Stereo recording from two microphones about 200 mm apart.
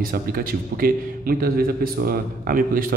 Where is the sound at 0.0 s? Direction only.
45° right (ahead or behind).